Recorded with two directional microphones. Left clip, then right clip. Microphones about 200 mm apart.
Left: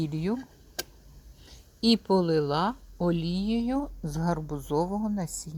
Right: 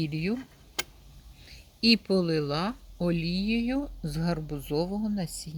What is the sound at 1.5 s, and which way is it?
Speech, 10° left (ahead or behind).